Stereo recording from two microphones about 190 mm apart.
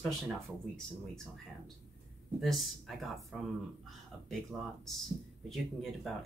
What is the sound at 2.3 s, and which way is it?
Speech, centre (ahead or behind).